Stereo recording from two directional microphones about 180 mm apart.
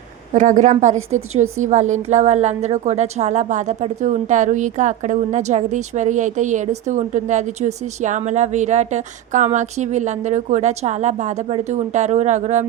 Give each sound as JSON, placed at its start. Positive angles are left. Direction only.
{"t": 0.3, "sound": "a woman's voice", "side_deg": -45}